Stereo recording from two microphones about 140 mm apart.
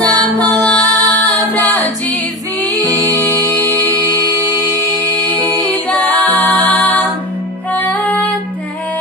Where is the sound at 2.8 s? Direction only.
25° right (ahead or behind).